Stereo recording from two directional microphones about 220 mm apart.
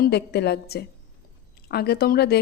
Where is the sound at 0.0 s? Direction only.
50° left (ahead or behind).